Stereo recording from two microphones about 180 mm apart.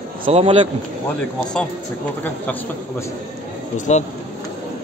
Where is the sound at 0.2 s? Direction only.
35° right (ahead or behind).